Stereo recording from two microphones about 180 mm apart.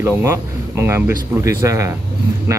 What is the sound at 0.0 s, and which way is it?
Speech, 15° right (ahead or behind).